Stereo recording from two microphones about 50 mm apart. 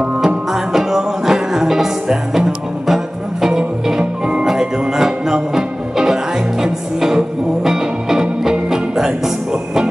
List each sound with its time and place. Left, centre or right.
0.0 s music: centre